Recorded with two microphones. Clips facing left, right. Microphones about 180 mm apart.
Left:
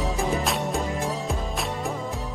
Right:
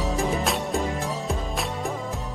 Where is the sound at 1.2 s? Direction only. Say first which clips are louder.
Even; centre (ahead or behind).